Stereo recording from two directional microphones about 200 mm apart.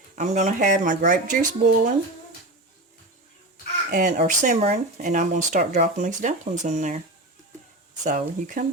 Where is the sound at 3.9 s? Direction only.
40° right (ahead or behind).